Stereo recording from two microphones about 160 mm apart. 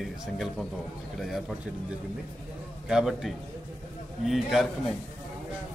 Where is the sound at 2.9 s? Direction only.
5° right (ahead or behind).